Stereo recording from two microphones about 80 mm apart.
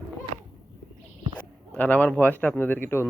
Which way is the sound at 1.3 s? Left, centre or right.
Centre.